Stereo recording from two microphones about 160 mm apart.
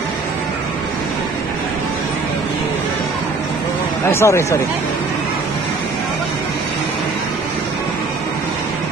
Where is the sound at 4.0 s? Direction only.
15° left (ahead or behind).